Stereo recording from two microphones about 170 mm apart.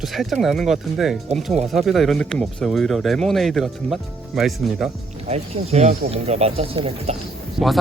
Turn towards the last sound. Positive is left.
turn(degrees=0)  # may be behind; listen again after turning